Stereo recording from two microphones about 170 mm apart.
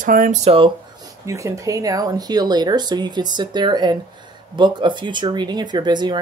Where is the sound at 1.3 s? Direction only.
20° right (ahead or behind).